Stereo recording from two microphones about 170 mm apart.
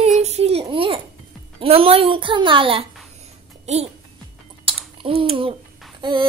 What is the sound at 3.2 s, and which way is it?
Babbling, 40° right (ahead or behind).